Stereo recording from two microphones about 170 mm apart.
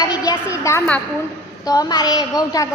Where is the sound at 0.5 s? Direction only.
15° left (ahead or behind).